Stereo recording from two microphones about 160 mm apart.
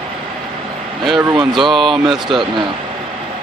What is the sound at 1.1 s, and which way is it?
Speech, 30° right (ahead or behind).